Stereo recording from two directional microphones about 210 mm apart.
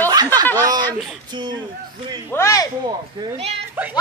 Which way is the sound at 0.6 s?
15° right (ahead or behind).